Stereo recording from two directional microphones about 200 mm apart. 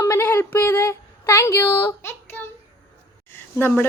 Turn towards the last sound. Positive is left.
turn(degrees=10)  # may be behind; listen again after turning